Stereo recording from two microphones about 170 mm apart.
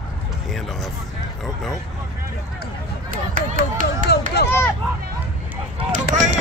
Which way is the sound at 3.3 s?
50° right (ahead or behind).